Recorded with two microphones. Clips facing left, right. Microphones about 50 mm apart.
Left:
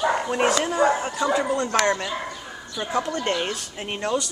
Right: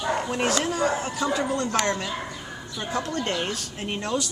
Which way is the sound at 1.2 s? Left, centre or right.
Centre.